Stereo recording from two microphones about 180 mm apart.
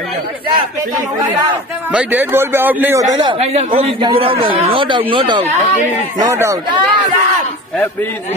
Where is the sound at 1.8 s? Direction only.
10° right (ahead or behind); by 5.6 s 25° right (ahead or behind).